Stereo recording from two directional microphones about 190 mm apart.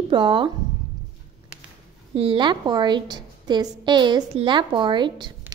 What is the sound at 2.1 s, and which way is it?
A woman's voice, 30° right (ahead or behind).